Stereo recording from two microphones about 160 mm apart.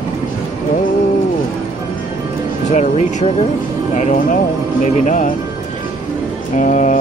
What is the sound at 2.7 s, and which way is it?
Speech, 45° left (ahead or behind).